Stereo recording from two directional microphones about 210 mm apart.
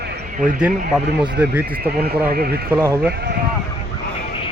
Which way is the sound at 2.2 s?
45° right (ahead or behind).